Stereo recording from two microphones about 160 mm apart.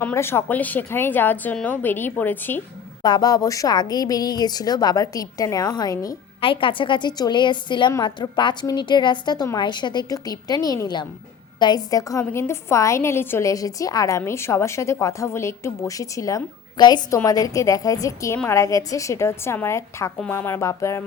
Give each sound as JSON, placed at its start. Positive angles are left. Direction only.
{"t": 0.0, "sound": "a woman's voice", "side_deg": 15}
{"t": 3.0, "sound": "a woman's voice", "side_deg": 25}
{"t": 6.4, "sound": "a woman's voice", "side_deg": 35}